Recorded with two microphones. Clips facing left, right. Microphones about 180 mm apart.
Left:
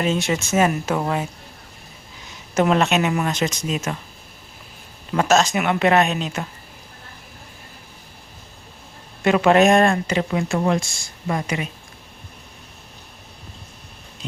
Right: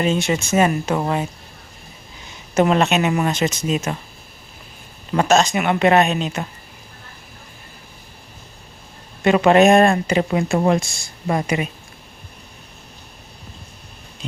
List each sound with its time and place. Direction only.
0.0 s speech: centre (ahead or behind)
2.6 s speech: centre (ahead or behind)
5.1 s speech: centre (ahead or behind)
9.2 s speech: centre (ahead or behind)
9.9 s speech: 20° right (ahead or behind)